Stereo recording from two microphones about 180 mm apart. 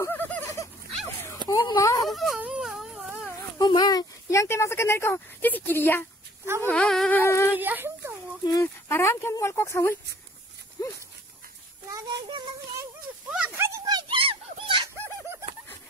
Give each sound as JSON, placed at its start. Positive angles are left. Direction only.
{"t": 0.0, "sound": "a sound", "side_deg": 10}
{"t": 2.0, "sound": "wail", "side_deg": 0}
{"t": 3.5, "sound": "speech", "side_deg": 25}
{"t": 6.4, "sound": "speech", "side_deg": -15}
{"t": 6.7, "sound": "speech", "side_deg": 5}
{"t": 7.5, "sound": "speech", "side_deg": -10}
{"t": 8.5, "sound": "speech", "side_deg": 15}
{"t": 11.9, "sound": "speech", "side_deg": -25}
{"t": 13.3, "sound": "a sound", "side_deg": -10}